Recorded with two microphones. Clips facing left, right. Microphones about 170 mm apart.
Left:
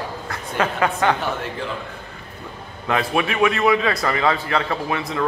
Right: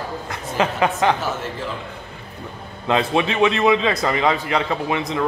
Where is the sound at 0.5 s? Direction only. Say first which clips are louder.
Right 1 dB; 20° right (ahead or behind).